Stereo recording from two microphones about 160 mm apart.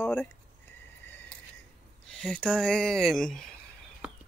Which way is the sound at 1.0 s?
10° left (ahead or behind).